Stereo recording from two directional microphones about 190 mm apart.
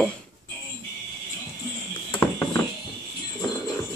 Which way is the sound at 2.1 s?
10° left (ahead or behind).